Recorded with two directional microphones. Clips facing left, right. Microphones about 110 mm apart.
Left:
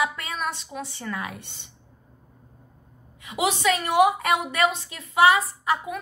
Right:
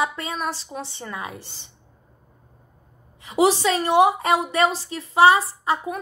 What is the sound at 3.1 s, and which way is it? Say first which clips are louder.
A woman's voice: right 7 dB; 30° right (ahead or behind).